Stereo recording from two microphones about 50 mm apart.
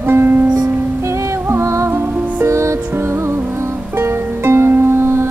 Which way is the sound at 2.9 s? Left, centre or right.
Right.